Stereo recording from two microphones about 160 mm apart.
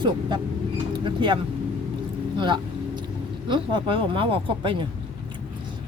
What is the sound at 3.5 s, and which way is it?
Speech, 30° right (ahead or behind).